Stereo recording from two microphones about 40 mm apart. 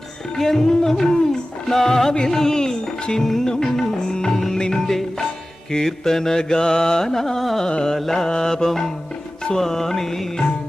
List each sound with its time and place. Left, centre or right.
0.3 s music: centre
7.7 s carnatic music: left
7.9 s music: centre